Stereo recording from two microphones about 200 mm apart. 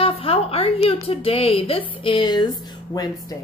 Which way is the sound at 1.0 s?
30° left (ahead or behind).